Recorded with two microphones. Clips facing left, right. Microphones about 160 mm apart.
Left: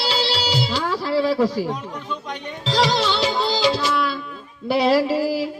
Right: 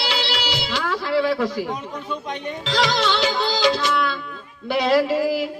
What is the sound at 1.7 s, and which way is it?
Speech, 5° right (ahead or behind).